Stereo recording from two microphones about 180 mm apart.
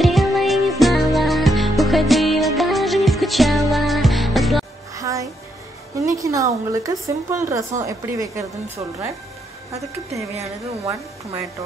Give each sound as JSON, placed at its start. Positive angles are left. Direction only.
{"t": 0.0, "sound": "music", "side_deg": 0}
{"t": 4.9, "sound": "music", "side_deg": -20}
{"t": 5.9, "sound": "a woman's voice", "side_deg": -15}